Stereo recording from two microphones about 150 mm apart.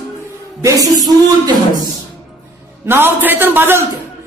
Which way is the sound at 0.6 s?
20° right (ahead or behind).